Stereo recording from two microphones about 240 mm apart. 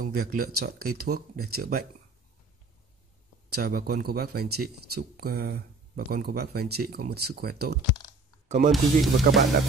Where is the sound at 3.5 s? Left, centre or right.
Right.